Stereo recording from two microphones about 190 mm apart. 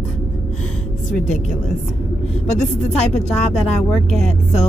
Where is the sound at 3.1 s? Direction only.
5° left (ahead or behind).